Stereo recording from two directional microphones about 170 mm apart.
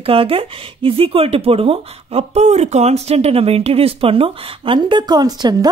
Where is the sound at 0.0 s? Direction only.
35° right (ahead or behind).